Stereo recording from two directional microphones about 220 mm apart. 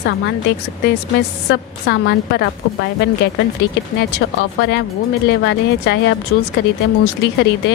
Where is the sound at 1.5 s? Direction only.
50° left (ahead or behind).